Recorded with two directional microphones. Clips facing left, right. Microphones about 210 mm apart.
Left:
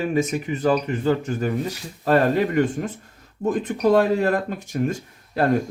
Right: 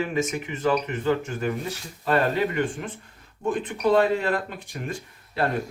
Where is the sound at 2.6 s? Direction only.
40° left (ahead or behind).